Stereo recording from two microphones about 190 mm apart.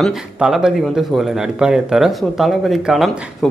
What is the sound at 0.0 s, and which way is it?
Speech, centre (ahead or behind).